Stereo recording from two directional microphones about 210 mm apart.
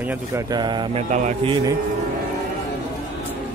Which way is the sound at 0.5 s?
20° right (ahead or behind).